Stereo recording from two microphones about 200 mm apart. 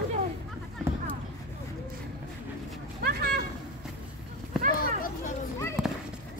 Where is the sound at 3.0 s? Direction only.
50° right (ahead or behind).